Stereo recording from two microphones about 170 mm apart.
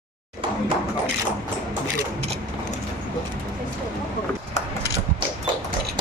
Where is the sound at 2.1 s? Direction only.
35° right (ahead or behind).